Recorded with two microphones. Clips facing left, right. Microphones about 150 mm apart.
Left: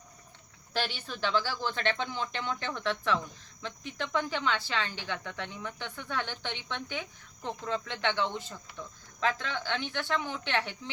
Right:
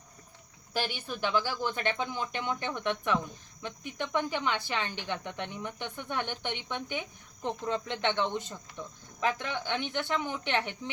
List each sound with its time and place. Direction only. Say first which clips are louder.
0.7 s speech: right 1 dB; 10° right (ahead or behind)